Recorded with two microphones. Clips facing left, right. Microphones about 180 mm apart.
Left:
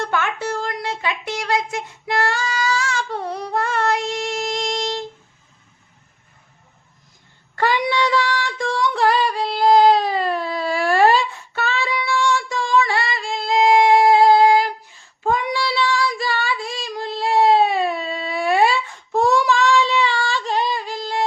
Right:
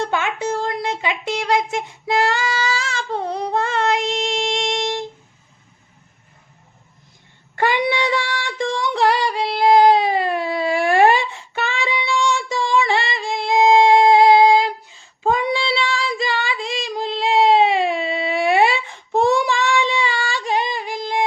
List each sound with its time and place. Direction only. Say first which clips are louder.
0.0 s a sound: right 1 dB; 20° right (ahead or behind)
4.4 s music: right 2 dB; 25° right (ahead or behind)
7.5 s female singing: right 1 dB; 15° right (ahead or behind)
9.2 s child singing: even; 15° right (ahead or behind)
10.2 s a sound: right 2 dB; 15° right (ahead or behind)
15.2 s child singing: right 2 dB; 20° right (ahead or behind)
16.2 s female singing: right 1 dB; 20° right (ahead or behind)
16.6 s female singing: right 3 dB; 90° right
16.9 s a sound: right 1 dB; 20° right (ahead or behind)
20.7 s singing: right 1 dB; 15° right (ahead or behind)